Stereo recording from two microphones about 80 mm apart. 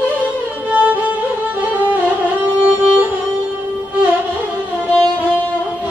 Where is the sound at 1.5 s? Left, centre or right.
Right.